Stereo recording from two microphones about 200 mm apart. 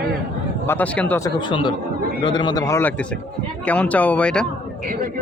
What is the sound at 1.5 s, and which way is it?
A man's voice, 25° left (ahead or behind).